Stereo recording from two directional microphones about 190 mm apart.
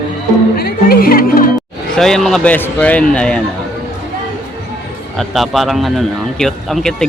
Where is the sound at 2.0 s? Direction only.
Centre (ahead or behind).